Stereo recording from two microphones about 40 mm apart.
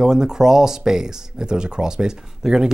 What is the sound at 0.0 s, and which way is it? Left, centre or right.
Speech, centre.